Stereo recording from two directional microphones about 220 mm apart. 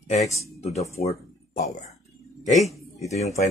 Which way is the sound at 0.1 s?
30° left (ahead or behind).